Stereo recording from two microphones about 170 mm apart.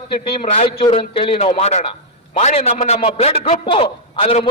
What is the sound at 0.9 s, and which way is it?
A man's voice, 30° left (ahead or behind).